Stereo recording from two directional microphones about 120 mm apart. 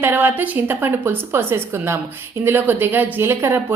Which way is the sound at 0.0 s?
15° right (ahead or behind).